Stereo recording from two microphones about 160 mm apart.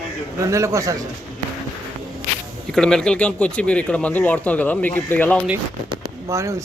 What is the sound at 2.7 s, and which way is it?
Speech, 5° left (ahead or behind).